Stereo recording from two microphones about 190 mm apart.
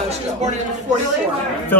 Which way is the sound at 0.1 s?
35° right (ahead or behind).